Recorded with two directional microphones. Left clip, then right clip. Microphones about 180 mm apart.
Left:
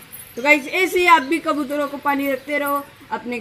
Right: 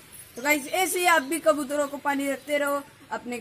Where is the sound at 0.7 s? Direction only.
20° right (ahead or behind).